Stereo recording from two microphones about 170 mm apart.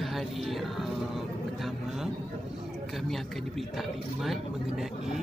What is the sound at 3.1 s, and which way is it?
Speech, centre (ahead or behind).